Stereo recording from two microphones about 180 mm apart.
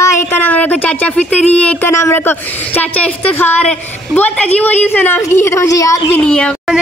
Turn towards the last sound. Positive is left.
turn(degrees=5)  # may be behind; listen again after turning